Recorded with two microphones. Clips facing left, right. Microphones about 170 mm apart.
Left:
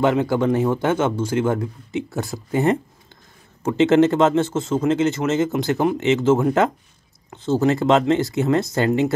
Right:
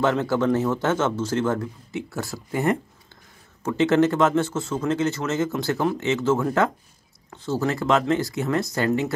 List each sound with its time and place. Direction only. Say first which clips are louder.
0.0 s speech: left 3 dB; 15° left (ahead or behind)